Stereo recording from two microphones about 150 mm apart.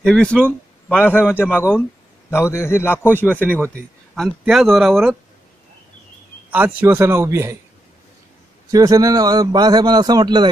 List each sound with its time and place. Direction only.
0.0 s a man's voice: 5° left (ahead or behind)
6.5 s a man's voice: 10° right (ahead or behind)
8.6 s a man's voice: 25° right (ahead or behind)